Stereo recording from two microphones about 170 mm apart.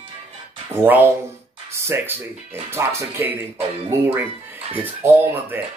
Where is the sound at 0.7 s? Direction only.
10° right (ahead or behind).